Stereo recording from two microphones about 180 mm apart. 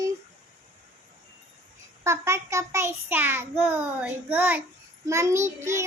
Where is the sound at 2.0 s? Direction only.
15° right (ahead or behind).